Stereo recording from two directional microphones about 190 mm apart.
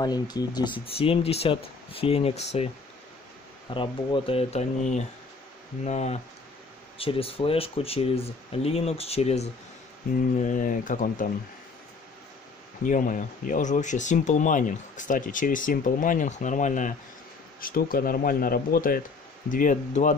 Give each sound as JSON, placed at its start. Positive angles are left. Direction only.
{"t": 0.0, "sound": "speech", "side_deg": 20}
{"t": 3.7, "sound": "speech", "side_deg": 25}
{"t": 12.8, "sound": "speech", "side_deg": 45}